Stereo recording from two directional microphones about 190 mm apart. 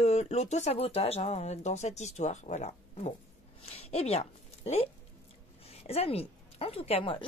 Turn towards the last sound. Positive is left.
turn(degrees=30)  # may be behind; listen again after turning